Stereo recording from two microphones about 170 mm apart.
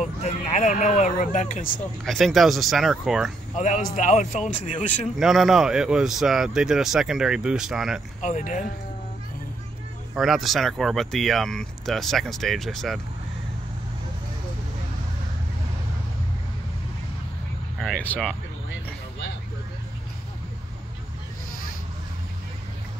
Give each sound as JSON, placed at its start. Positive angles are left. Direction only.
{"t": 0.2, "sound": "speech", "side_deg": 45}
{"t": 2.0, "sound": "speech", "side_deg": 0}
{"t": 3.5, "sound": "speech", "side_deg": 45}
{"t": 5.2, "sound": "speech", "side_deg": 0}
{"t": 8.2, "sound": "speech", "side_deg": 45}
{"t": 10.1, "sound": "speech", "side_deg": 0}
{"t": 17.7, "sound": "vehicle", "side_deg": 5}